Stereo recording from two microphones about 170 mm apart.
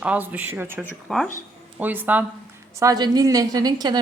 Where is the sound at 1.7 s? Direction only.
10° right (ahead or behind).